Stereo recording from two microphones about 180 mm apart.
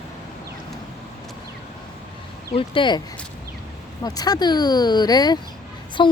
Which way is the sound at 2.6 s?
25° left (ahead or behind).